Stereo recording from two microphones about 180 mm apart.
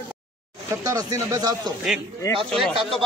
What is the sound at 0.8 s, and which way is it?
Speech, 20° right (ahead or behind).